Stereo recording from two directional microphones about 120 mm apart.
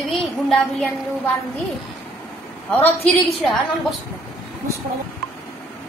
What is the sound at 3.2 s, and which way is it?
Speech, centre (ahead or behind).